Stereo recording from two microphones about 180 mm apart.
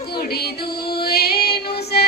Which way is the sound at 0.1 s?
60° left (ahead or behind).